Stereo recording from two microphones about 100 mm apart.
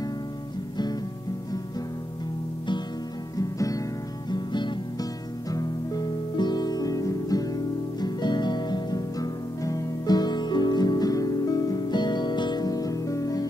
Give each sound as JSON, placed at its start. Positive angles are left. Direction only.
{"t": 3.3, "sound": "music", "side_deg": 35}
{"t": 4.3, "sound": "music", "side_deg": 50}
{"t": 5.5, "sound": "guitar", "side_deg": 40}